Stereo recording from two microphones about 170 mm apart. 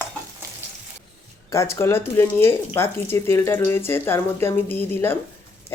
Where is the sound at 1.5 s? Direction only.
15° left (ahead or behind).